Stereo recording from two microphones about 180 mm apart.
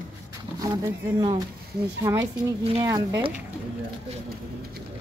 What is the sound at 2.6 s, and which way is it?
Speech, 30° right (ahead or behind).